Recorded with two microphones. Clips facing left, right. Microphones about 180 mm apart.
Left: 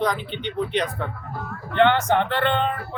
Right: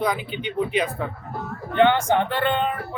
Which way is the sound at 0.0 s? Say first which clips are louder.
Even; 10° right (ahead or behind).